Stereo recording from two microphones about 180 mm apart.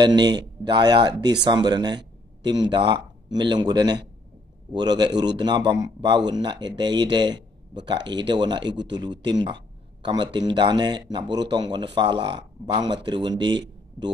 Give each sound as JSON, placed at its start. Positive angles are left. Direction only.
{"t": 0.0, "sound": "speech", "side_deg": -25}